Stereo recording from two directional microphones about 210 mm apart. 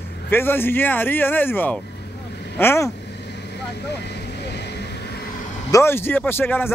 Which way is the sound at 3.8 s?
55° left (ahead or behind).